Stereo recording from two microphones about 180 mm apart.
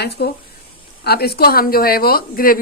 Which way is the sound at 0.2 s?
65° left (ahead or behind).